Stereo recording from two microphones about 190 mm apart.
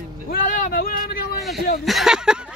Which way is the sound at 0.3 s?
50° left (ahead or behind).